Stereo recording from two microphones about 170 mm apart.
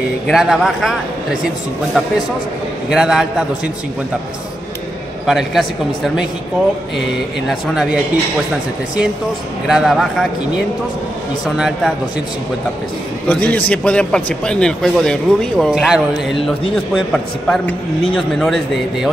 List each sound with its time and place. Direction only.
0.3 s a man's voice: centre (ahead or behind)
2.9 s a man's voice: 5° right (ahead or behind)
5.2 s a man's voice: centre (ahead or behind)
7.4 s a man's voice: centre (ahead or behind)
9.7 s a man's voice: centre (ahead or behind)
11.4 s a man's voice: centre (ahead or behind)
13.3 s a man's voice: 10° left (ahead or behind)